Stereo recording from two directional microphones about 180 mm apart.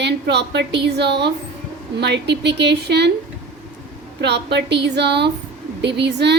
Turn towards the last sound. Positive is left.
turn(degrees=-70)  # may be behind; listen again after turning